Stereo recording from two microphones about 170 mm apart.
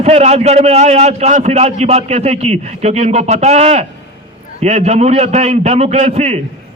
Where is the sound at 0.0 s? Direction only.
40° right (ahead or behind).